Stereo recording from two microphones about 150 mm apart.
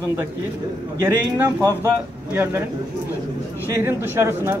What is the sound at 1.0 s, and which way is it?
Speech, 20° right (ahead or behind).